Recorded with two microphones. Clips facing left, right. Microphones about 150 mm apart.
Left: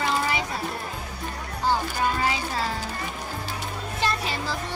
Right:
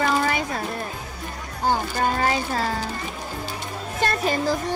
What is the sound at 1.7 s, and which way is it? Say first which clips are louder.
Speech: right 2 dB; 45° right (ahead or behind).